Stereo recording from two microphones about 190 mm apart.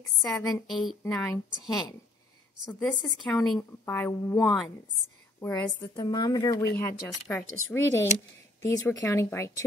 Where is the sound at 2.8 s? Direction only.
5° left (ahead or behind).